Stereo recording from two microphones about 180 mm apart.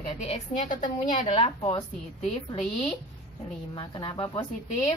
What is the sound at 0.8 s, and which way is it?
Speech, 30° left (ahead or behind).